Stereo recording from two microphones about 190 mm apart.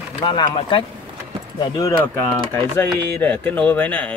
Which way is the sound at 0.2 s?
25° left (ahead or behind).